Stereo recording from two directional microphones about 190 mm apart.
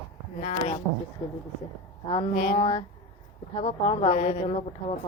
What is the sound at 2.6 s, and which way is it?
A woman's voice, 30° left (ahead or behind).